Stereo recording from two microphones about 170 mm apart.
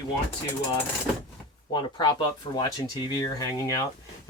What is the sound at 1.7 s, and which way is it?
Speech, 25° left (ahead or behind).